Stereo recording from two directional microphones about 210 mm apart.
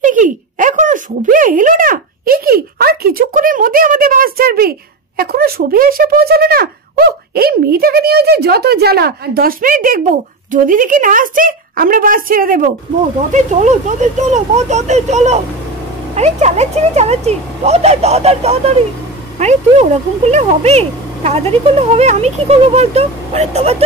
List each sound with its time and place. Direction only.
0.0 s speech: 40° right (ahead or behind)